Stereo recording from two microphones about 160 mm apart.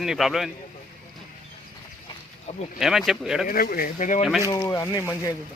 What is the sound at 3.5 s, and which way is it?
Speech, 65° left (ahead or behind).